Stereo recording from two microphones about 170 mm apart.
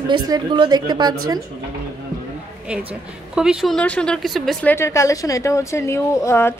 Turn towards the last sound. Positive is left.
turn(degrees=15)  # may be behind; listen again after turning